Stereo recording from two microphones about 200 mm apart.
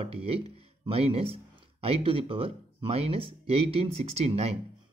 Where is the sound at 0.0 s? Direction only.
30° right (ahead or behind).